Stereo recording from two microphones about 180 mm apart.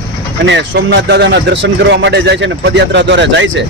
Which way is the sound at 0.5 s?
70° right (ahead or behind).